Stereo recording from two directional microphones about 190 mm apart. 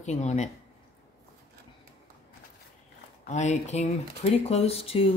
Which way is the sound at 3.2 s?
40° left (ahead or behind).